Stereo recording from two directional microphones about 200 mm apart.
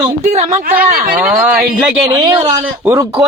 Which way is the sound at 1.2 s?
5° right (ahead or behind).